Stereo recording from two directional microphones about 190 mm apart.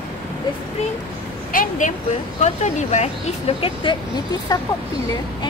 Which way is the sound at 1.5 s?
45° left (ahead or behind).